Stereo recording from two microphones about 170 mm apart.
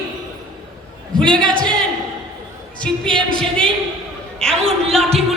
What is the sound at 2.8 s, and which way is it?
Speech, 5° left (ahead or behind).